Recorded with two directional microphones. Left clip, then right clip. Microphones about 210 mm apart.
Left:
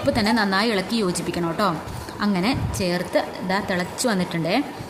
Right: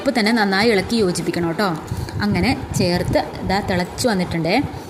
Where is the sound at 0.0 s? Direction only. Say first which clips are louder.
Right 3 dB; 10° right (ahead or behind).